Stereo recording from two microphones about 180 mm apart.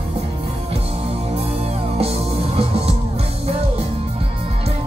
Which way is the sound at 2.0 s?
35° right (ahead or behind).